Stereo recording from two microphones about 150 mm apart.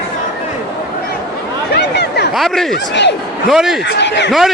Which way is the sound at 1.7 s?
90° left.